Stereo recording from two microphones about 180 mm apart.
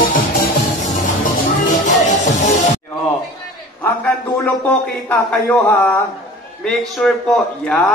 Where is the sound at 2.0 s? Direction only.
40° left (ahead or behind).